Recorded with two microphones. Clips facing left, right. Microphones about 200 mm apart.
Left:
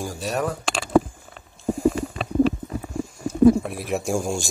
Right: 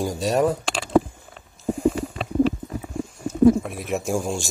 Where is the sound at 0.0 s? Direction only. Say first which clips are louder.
Right 5 dB; 25° right (ahead or behind).